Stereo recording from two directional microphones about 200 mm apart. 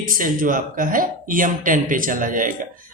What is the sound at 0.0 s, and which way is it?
Speech, 45° right (ahead or behind).